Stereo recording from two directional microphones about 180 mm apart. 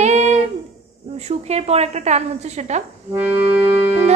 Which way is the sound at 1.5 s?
35° right (ahead or behind).